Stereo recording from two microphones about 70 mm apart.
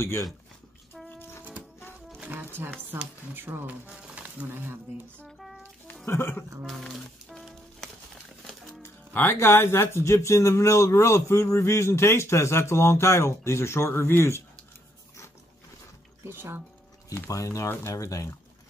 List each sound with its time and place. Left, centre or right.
2.2 s speech: right
3.8 s speech: centre; by 5.0 s right
6.0 s speech: left
6.6 s music: centre
8.8 s speech: left
16.3 s speech: right
17.1 s speech: left